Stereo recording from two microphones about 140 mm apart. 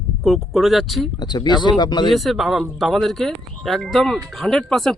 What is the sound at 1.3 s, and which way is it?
Speech, 30° left (ahead or behind).